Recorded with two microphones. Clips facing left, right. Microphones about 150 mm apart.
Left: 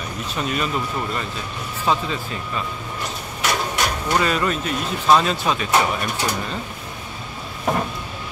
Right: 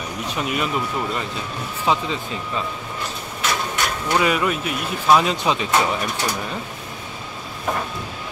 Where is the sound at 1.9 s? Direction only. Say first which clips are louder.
Even; 15° right (ahead or behind).